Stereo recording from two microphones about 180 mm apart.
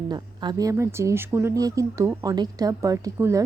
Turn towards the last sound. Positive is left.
turn(degrees=-20)  # may be behind; listen again after turning